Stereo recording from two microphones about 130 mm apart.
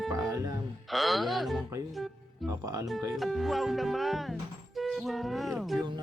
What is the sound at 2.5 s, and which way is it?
Speech, 25° right (ahead or behind).